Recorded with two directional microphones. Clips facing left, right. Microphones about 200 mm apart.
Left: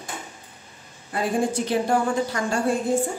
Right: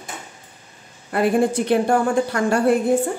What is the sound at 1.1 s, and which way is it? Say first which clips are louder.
A woman's voice: right 6 dB; 60° right (ahead or behind).